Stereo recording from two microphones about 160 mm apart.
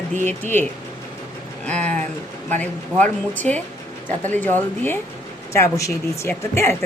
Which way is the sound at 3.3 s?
10° left (ahead or behind).